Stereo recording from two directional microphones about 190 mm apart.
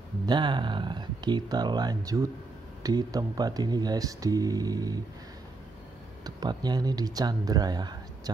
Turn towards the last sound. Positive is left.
turn(degrees=-20)  # may be behind; listen again after turning